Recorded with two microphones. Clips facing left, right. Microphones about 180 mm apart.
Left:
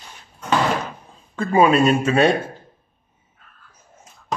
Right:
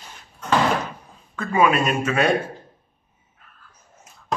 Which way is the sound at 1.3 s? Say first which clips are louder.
Left 4 dB; 30° left (ahead or behind).